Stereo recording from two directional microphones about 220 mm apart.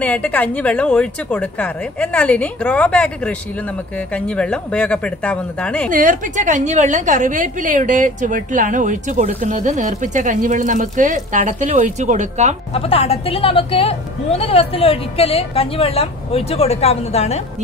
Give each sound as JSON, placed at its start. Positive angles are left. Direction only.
{"t": 0.0, "sound": "a woman's voice", "side_deg": 5}
{"t": 5.9, "sound": "a woman's voice", "side_deg": -35}
{"t": 12.7, "sound": "a woman's voice", "side_deg": 25}